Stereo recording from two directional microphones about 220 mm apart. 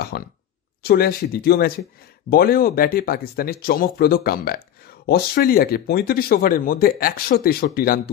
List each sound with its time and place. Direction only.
0.1 s speech: 45° left (ahead or behind)